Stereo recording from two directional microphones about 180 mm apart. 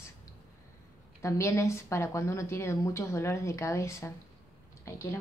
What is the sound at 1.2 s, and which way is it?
A woman's voice, 15° left (ahead or behind).